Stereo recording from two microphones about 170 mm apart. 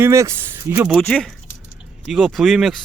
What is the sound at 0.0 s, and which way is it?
Speech, 15° right (ahead or behind).